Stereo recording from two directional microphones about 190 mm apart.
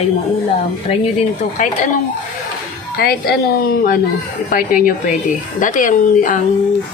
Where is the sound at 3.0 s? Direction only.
55° left (ahead or behind).